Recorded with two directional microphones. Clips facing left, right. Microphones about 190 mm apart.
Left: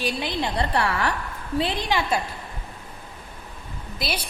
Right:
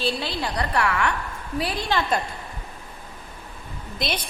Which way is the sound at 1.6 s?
20° left (ahead or behind).